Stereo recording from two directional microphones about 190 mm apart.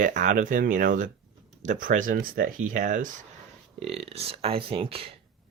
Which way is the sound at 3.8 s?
30° right (ahead or behind).